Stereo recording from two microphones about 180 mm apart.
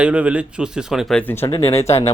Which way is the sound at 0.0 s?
5° right (ahead or behind).